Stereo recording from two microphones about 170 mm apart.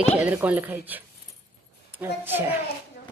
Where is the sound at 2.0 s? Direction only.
15° right (ahead or behind).